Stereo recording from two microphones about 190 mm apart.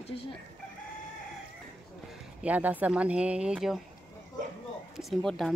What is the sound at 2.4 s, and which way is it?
Speech, 10° right (ahead or behind).